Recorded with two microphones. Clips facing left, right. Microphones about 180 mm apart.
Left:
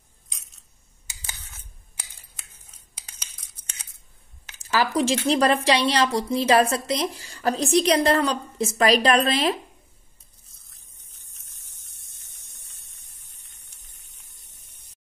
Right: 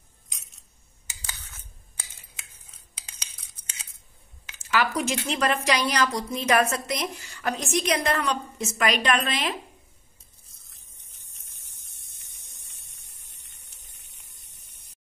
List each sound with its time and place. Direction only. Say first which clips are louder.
4.6 s a woman's voice: left 3 dB; 35° left (ahead or behind)